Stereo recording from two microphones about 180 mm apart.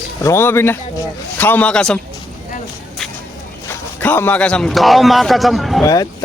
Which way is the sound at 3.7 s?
10° left (ahead or behind).